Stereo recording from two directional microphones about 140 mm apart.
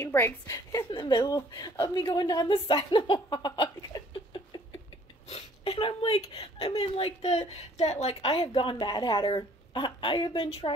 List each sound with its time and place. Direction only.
0.0 s a woman's voice: 15° left (ahead or behind)
0.5 s a woman's voice: 25° left (ahead or behind)
5.3 s a woman's voice: 45° left (ahead or behind)